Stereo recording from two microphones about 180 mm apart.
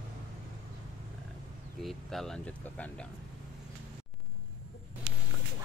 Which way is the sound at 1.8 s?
Centre (ahead or behind).